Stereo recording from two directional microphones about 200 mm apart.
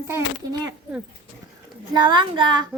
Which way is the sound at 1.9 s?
25° right (ahead or behind).